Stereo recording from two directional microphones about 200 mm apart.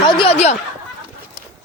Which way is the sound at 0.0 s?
30° left (ahead or behind).